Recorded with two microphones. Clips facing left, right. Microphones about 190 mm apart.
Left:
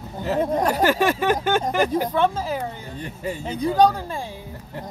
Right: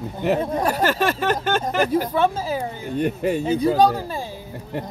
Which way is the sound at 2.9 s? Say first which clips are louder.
Right 12 dB; 70° right (ahead or behind).